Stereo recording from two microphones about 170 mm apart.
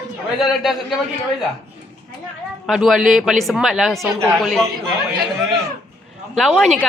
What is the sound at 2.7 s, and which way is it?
A woman's voice, centre (ahead or behind).